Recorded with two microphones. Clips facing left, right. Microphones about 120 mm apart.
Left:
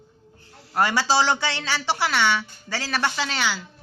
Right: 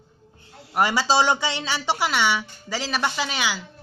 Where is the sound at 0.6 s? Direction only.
15° right (ahead or behind).